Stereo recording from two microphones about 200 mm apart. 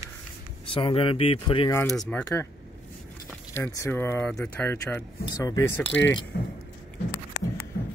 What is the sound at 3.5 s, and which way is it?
Speech, 15° left (ahead or behind).